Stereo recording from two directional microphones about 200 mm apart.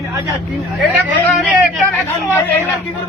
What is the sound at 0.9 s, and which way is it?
Speech, 5° right (ahead or behind).